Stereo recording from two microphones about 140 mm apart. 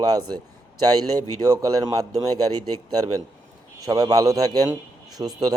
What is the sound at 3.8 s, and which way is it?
Speech, 25° right (ahead or behind).